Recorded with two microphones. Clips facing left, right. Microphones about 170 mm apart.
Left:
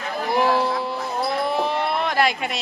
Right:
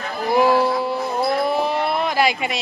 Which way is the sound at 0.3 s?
5° right (ahead or behind).